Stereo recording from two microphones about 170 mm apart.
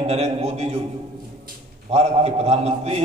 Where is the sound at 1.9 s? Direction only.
40° right (ahead or behind).